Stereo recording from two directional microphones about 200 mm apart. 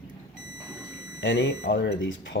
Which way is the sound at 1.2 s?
60° left (ahead or behind).